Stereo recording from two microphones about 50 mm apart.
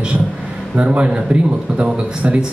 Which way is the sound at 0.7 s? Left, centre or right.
Right.